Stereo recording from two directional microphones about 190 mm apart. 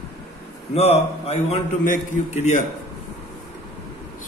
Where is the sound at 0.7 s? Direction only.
30° left (ahead or behind).